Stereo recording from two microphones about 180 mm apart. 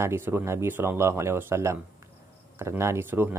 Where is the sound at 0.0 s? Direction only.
15° right (ahead or behind).